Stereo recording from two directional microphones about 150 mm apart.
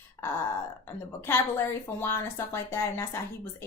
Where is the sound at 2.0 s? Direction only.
15° left (ahead or behind).